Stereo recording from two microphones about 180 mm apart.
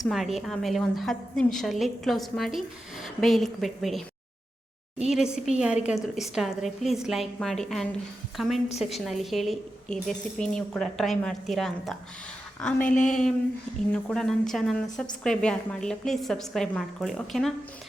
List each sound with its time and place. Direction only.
0.1 s a woman's voice: centre (ahead or behind)
5.0 s a woman's voice: 5° right (ahead or behind)